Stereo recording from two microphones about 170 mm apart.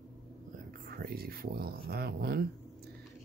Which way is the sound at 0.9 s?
65° right (ahead or behind).